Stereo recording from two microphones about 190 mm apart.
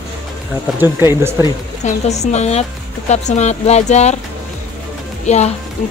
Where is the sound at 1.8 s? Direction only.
35° left (ahead or behind).